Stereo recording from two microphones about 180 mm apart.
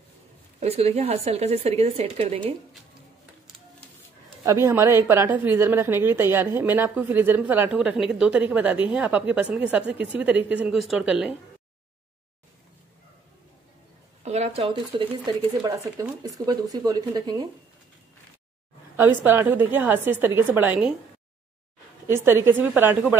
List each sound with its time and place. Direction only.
0.6 s speech: 35° right (ahead or behind)
4.5 s a woman's voice: 15° right (ahead or behind)
14.2 s speech: 40° right (ahead or behind)
15.6 s speech: 20° right (ahead or behind)
18.9 s a woman's voice: 10° right (ahead or behind)
22.0 s a woman's voice: 15° right (ahead or behind)